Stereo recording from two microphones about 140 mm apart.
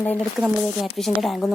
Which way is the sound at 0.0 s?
10° left (ahead or behind).